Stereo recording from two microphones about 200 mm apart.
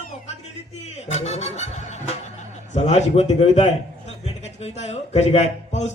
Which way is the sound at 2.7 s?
35° left (ahead or behind).